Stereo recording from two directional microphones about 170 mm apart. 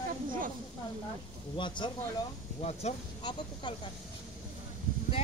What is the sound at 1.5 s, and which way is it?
Speech, 25° left (ahead or behind).